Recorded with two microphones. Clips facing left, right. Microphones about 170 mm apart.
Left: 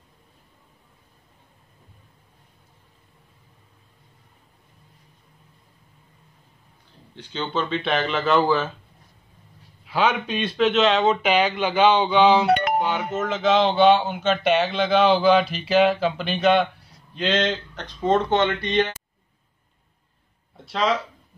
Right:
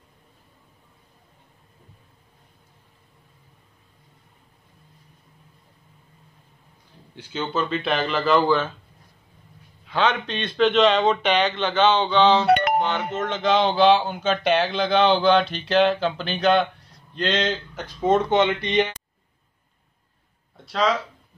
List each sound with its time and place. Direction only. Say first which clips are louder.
7.2 s speech: right 1 dB; 5° right (ahead or behind)
9.8 s speech: left 1 dB; 10° left (ahead or behind)
12.4 s music: right 2 dB; 65° right (ahead or behind)
12.8 s speech: left 1 dB; 5° left (ahead or behind); by 18.9 s 15° right (ahead or behind)
20.5 s speech: even; centre (ahead or behind)